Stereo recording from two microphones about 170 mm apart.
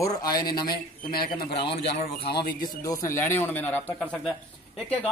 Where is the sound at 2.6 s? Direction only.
20° left (ahead or behind).